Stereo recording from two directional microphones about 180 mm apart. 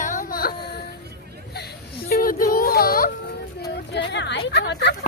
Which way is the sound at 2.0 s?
55° left (ahead or behind).